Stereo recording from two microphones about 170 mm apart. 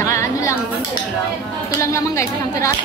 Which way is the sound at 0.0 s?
20° left (ahead or behind).